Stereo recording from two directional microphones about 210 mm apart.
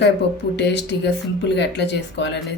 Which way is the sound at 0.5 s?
55° left (ahead or behind).